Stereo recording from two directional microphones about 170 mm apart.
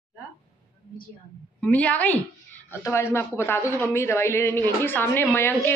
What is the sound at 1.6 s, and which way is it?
A woman's voice, 10° left (ahead or behind).